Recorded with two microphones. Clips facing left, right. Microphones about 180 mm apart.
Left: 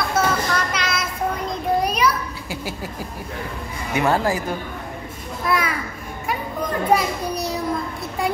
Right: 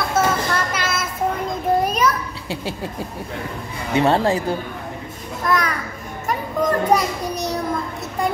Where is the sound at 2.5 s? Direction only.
25° right (ahead or behind).